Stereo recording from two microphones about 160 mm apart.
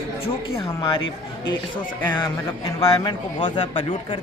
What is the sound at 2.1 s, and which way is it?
A man's voice, 25° left (ahead or behind).